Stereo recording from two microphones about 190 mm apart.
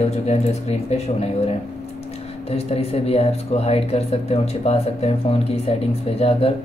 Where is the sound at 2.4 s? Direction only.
30° left (ahead or behind).